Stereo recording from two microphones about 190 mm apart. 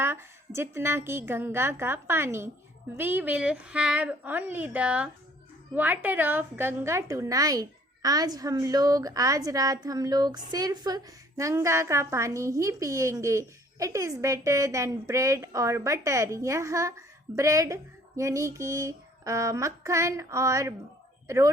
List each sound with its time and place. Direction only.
0.0 s a woman's voice: 15° right (ahead or behind)